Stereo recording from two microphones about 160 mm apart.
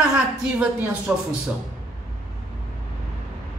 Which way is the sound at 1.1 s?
5° right (ahead or behind).